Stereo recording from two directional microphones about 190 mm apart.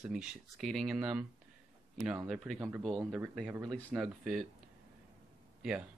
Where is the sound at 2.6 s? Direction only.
Centre (ahead or behind).